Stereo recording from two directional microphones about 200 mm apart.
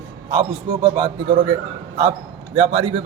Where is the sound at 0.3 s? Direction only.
25° right (ahead or behind).